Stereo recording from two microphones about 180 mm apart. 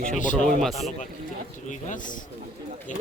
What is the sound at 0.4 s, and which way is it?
Speech, centre (ahead or behind).